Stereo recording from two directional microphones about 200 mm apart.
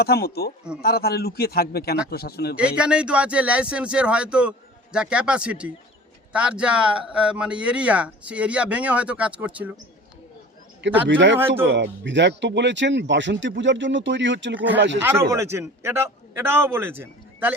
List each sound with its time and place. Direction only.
0.0 s a man's voice: 50° left (ahead or behind)
2.6 s speech: 5° right (ahead or behind)
10.8 s speech: 65° right (ahead or behind)
11.3 s a man's voice: 10° right (ahead or behind)
11.7 s speech: 65° right (ahead or behind)
14.5 s a man's voice: 10° right (ahead or behind)
14.8 s speech: 65° right (ahead or behind)
15.0 s a man's voice: 15° right (ahead or behind)